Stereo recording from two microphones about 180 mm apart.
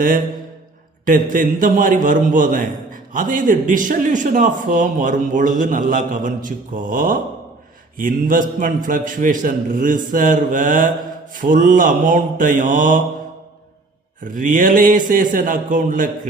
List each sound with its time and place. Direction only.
1.0 s a man's voice: 50° right (ahead or behind)
14.2 s a man's voice: 50° right (ahead or behind)